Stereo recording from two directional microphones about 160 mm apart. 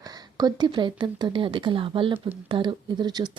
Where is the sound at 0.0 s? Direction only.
25° right (ahead or behind).